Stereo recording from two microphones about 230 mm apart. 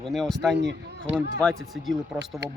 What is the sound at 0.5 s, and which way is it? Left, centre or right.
Speech, right.